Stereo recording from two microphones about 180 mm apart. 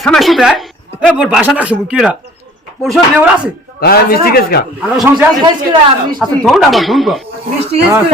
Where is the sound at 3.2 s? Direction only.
5° right (ahead or behind).